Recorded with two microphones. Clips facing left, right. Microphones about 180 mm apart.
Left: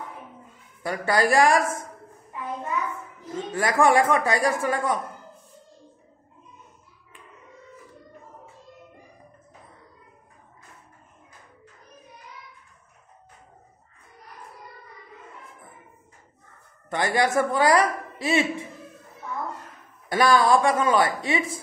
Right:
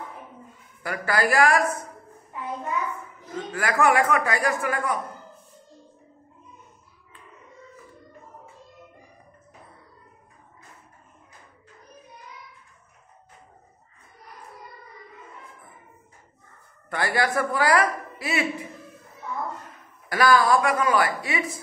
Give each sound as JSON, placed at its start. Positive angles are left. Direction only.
{"t": 0.8, "sound": "a woman's voice", "side_deg": 25}
{"t": 3.3, "sound": "a woman's voice", "side_deg": 25}
{"t": 16.9, "sound": "a woman's voice", "side_deg": 20}
{"t": 20.1, "sound": "a woman's voice", "side_deg": 25}